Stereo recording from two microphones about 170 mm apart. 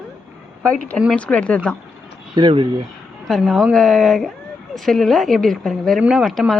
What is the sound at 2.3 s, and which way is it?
Speech, 30° right (ahead or behind).